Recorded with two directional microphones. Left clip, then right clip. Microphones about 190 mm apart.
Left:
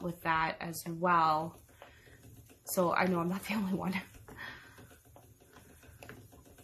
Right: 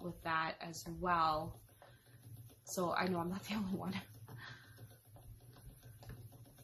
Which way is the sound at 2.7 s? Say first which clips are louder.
Left 7 dB; 45° left (ahead or behind).